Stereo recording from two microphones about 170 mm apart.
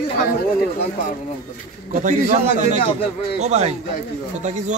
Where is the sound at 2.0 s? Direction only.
45° right (ahead or behind).